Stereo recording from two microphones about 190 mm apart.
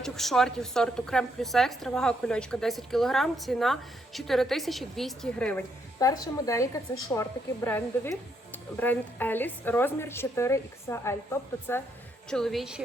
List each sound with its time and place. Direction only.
0.0 s a woman's voice: centre (ahead or behind)
6.0 s speech: 20° left (ahead or behind)
12.3 s a woman's voice: centre (ahead or behind)